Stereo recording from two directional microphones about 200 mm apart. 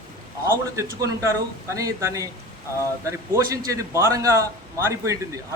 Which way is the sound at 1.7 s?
15° right (ahead or behind).